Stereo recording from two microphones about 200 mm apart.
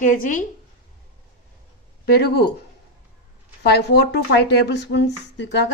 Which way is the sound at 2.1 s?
55° left (ahead or behind).